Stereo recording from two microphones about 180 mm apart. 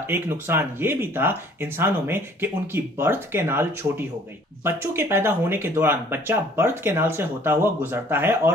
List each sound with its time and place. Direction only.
0.0 s speech: 10° right (ahead or behind)